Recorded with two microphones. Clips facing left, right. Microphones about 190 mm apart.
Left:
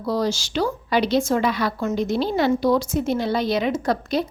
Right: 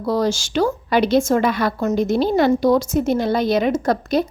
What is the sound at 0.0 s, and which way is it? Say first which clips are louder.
A woman's voice: right 3 dB; 50° right (ahead or behind).